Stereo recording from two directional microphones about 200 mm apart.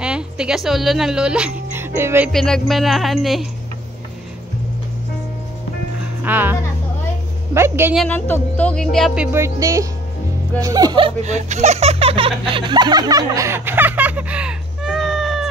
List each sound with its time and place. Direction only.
0.0 s a woman's voice: 5° right (ahead or behind)
2.3 s speech: 5° left (ahead or behind)
6.2 s speech: 10° right (ahead or behind)
7.9 s speech: 5° left (ahead or behind)